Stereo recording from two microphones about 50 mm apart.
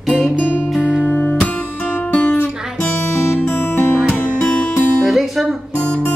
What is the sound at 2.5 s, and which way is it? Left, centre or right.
Guitar, centre.